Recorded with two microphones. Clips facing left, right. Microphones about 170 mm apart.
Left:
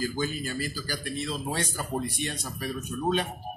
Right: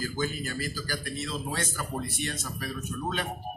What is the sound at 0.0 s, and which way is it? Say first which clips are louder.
A man's voice: left 2 dB; 15° left (ahead or behind).